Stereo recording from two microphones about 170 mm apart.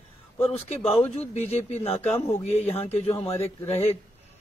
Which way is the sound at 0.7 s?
35° left (ahead or behind).